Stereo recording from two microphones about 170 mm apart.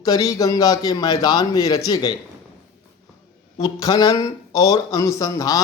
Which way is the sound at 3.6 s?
20° left (ahead or behind).